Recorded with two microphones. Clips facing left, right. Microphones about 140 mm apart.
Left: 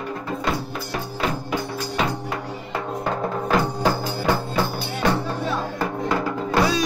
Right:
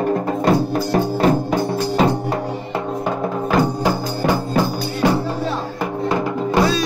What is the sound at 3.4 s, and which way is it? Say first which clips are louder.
Music: right 3 dB; 15° right (ahead or behind).